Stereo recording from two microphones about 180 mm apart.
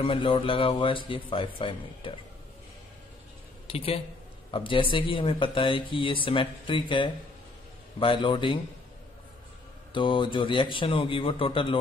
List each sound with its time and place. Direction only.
0.0 s speech: 30° left (ahead or behind)
3.6 s speech: 30° left (ahead or behind)
9.9 s speech: 25° left (ahead or behind)